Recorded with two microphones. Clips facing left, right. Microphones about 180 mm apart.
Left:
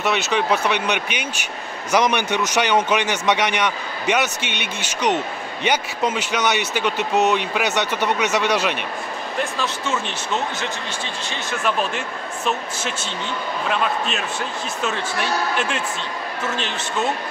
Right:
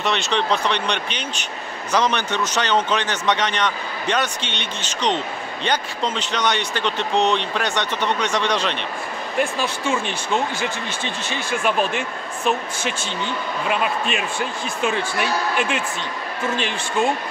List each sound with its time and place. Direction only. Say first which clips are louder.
0.0 s speech: left 1 dB; 5° left (ahead or behind)
9.4 s speech: right 3 dB; 15° right (ahead or behind)
13.7 s speech: even; 10° right (ahead or behind)